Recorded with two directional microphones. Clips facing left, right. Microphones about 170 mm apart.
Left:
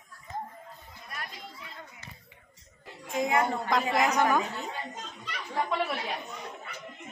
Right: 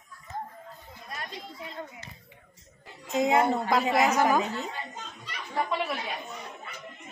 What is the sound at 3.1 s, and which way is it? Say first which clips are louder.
Speech: right 4 dB; 25° right (ahead or behind).